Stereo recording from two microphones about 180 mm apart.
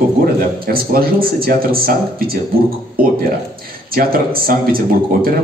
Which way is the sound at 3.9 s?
55° right (ahead or behind).